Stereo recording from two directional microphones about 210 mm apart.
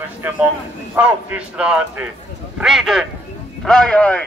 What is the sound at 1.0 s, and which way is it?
A man's voice, 10° right (ahead or behind).